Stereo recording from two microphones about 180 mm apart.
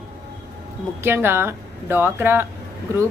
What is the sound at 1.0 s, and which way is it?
Speech, 10° right (ahead or behind).